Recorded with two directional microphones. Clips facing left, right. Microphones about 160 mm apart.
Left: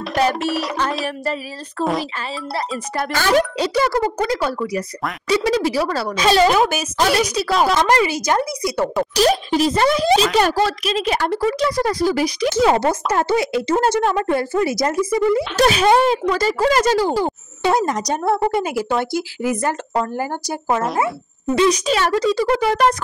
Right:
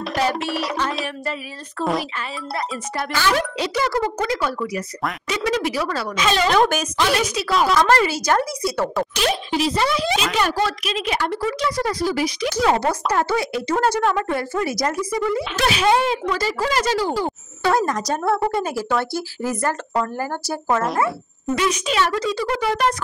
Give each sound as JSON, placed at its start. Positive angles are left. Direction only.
{"t": 0.0, "sound": "music", "side_deg": 0}
{"t": 1.0, "sound": "a woman's voice", "side_deg": 40}
{"t": 3.0, "sound": "a woman's voice", "side_deg": 45}
{"t": 6.5, "sound": "speech", "side_deg": 10}
{"t": 7.0, "sound": "a woman's voice", "side_deg": 40}
{"t": 7.7, "sound": "speech", "side_deg": 15}
{"t": 9.1, "sound": "a woman's voice", "side_deg": 40}
{"t": 12.4, "sound": "speech", "side_deg": 25}
{"t": 15.5, "sound": "speech", "side_deg": 40}
{"t": 17.2, "sound": "speech", "side_deg": 20}
{"t": 21.5, "sound": "a woman's voice", "side_deg": 35}